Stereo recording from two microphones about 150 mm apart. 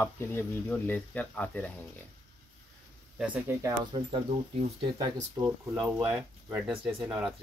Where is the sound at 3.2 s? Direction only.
10° right (ahead or behind).